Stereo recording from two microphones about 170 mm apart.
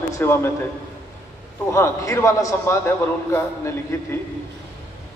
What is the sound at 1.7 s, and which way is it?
A man's voice, 15° left (ahead or behind).